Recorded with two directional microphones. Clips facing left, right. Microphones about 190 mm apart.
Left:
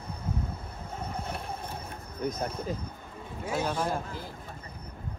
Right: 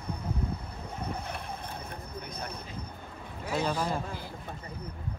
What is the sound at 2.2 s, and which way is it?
Speech, 45° left (ahead or behind).